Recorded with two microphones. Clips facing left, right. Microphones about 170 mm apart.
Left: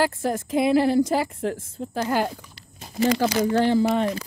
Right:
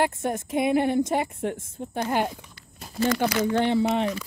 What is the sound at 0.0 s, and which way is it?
Speech, 90° left.